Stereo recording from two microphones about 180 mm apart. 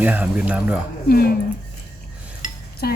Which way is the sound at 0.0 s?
10° right (ahead or behind).